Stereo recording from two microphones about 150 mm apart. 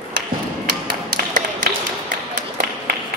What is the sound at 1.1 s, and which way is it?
Tap, 65° right (ahead or behind).